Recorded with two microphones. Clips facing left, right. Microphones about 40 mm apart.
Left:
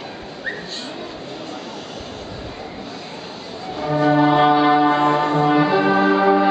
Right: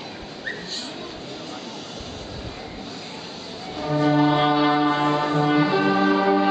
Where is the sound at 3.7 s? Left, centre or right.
Centre.